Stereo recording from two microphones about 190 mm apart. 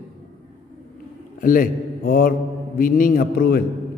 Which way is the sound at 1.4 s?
45° left (ahead or behind).